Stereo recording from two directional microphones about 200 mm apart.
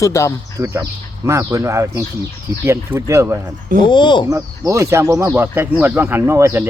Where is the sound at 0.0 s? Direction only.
15° left (ahead or behind).